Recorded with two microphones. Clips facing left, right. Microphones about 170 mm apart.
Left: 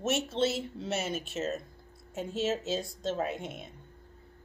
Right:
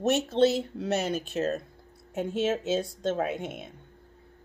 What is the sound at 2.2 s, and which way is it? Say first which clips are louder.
Speech: right 4 dB; 55° right (ahead or behind).